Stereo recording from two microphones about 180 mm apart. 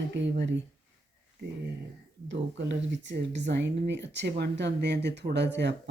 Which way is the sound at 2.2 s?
85° right.